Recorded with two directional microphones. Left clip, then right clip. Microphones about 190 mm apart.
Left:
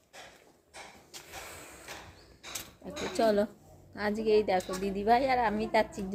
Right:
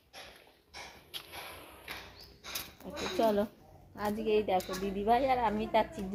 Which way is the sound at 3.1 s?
20° left (ahead or behind).